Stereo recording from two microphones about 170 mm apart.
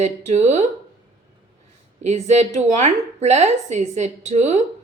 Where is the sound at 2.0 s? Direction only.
40° right (ahead or behind).